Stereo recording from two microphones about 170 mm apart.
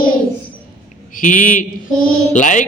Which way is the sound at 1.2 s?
50° left (ahead or behind).